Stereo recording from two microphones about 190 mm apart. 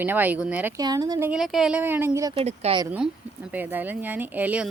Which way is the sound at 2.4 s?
35° right (ahead or behind).